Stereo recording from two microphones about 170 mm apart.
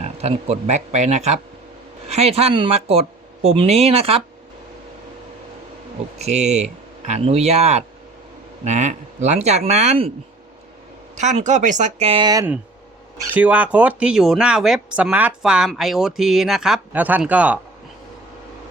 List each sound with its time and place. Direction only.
0.0 s speech: 40° right (ahead or behind)
6.1 s speech: 40° right (ahead or behind)
11.2 s speech: 45° right (ahead or behind); by 12.5 s 25° right (ahead or behind)
13.3 s speech: 10° right (ahead or behind)